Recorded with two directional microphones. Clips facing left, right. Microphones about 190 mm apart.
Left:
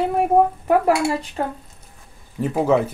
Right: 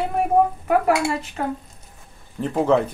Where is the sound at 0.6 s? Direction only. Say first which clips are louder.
Left 2 dB; 35° left (ahead or behind).